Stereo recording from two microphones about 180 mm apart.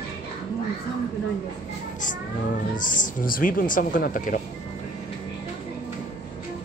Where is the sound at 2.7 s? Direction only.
50° left (ahead or behind).